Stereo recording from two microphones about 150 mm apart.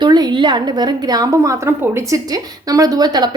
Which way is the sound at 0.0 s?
30° right (ahead or behind).